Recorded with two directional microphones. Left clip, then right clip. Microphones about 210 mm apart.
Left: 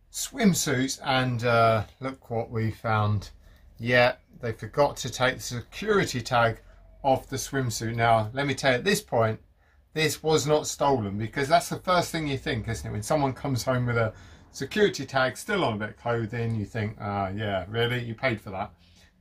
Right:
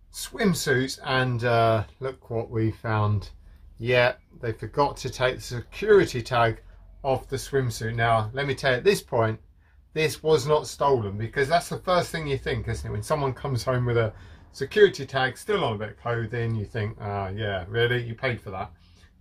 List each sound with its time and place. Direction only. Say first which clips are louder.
0.1 s speech: even; centre (ahead or behind)